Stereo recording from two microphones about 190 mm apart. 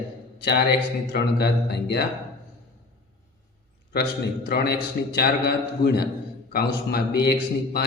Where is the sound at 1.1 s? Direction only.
60° left (ahead or behind).